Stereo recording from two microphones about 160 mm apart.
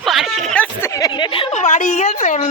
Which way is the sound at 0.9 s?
25° left (ahead or behind).